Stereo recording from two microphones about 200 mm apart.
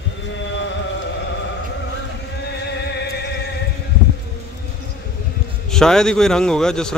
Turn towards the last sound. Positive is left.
turn(degrees=5)  # may be behind; listen again after turning